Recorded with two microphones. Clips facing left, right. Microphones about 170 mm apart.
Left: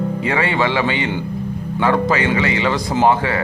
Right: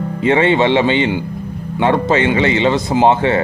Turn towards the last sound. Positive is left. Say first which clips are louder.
# right 3 dB
turn(degrees=-25)  # may be behind; listen again after turning